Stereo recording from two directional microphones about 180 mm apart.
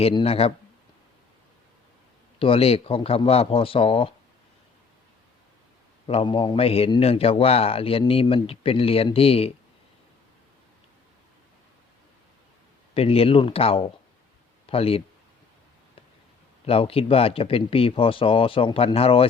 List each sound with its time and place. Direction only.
0.0 s a man's voice: 30° left (ahead or behind)
2.4 s a man's voice: 30° left (ahead or behind)
6.1 s a man's voice: 30° left (ahead or behind)
12.9 s a man's voice: 30° left (ahead or behind)
16.6 s a man's voice: 30° left (ahead or behind)